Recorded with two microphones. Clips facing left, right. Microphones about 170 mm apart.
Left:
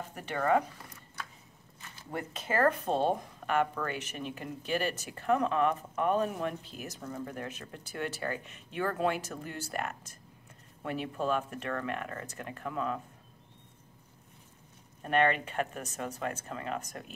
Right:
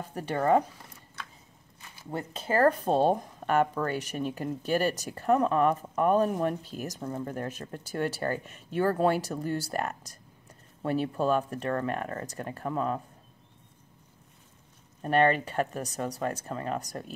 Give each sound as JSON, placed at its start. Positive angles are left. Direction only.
{"t": 0.1, "sound": "speech", "side_deg": -35}
{"t": 1.8, "sound": "a sound", "side_deg": -15}
{"t": 2.0, "sound": "speech", "side_deg": -30}
{"t": 15.0, "sound": "speech", "side_deg": -35}